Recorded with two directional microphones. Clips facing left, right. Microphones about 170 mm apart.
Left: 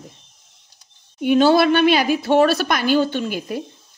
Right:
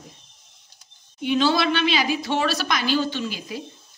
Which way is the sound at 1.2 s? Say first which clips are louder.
Left 7 dB; 50° left (ahead or behind).